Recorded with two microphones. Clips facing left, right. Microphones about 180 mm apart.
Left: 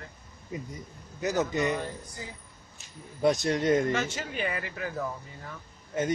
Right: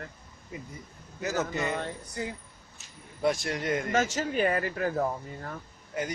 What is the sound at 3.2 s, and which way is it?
Speech, 20° left (ahead or behind).